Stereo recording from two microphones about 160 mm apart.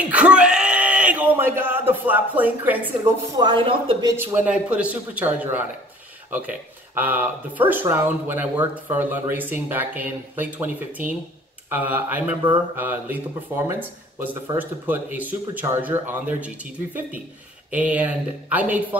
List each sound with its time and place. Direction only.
0.1 s a sound: 5° right (ahead or behind)
3.0 s speech: 30° right (ahead or behind)
4.2 s speech: 10° right (ahead or behind)
7.0 s speech: 10° right (ahead or behind)
11.7 s speech: 10° right (ahead or behind)
17.6 s speech: 10° right (ahead or behind)